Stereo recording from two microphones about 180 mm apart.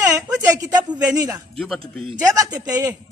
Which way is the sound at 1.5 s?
Centre (ahead or behind).